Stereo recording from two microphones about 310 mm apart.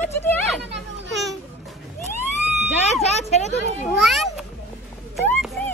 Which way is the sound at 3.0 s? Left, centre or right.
Left.